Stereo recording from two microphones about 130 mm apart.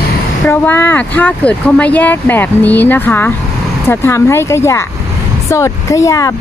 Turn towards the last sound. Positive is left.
turn(degrees=25)  # may be behind; listen again after turning